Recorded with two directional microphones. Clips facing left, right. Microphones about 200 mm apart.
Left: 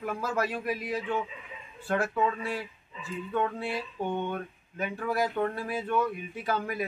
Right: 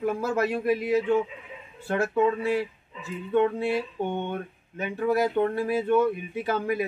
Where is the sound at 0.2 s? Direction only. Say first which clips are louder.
Right 5 dB; 25° right (ahead or behind).